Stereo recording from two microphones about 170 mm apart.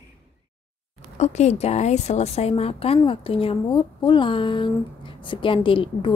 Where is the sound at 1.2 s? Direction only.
40° left (ahead or behind).